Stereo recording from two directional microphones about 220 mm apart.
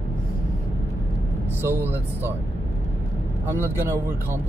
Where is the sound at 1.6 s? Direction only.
10° right (ahead or behind).